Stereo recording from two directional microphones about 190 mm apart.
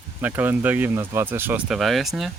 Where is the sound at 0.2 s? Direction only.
10° right (ahead or behind).